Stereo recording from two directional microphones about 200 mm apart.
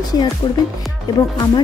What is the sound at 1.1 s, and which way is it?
Speech, 20° left (ahead or behind).